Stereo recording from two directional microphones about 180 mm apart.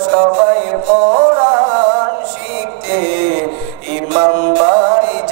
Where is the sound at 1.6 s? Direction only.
15° right (ahead or behind).